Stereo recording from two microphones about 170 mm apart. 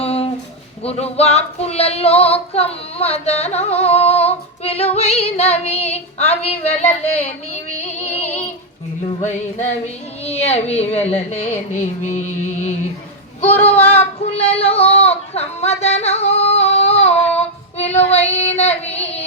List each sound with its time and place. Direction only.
0.0 s a sound: 35° left (ahead or behind)
0.9 s female singing: 40° left (ahead or behind)
8.0 s music: 40° left (ahead or behind)
9.8 s female singing: 40° left (ahead or behind)
11.7 s music: 45° left (ahead or behind)
13.5 s female singing: 35° left (ahead or behind)
13.8 s speech: 35° left (ahead or behind)
17.3 s child singing: 35° left (ahead or behind)